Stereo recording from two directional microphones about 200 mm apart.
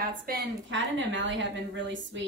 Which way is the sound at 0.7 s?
70° right (ahead or behind).